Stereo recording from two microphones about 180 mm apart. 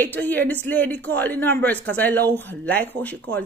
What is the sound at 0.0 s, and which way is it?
A woman's voice, 10° left (ahead or behind).